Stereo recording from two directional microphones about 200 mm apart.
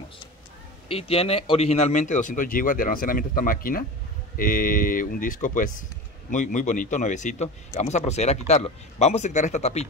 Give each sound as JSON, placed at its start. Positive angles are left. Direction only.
{"t": 0.8, "sound": "a man's voice", "side_deg": 30}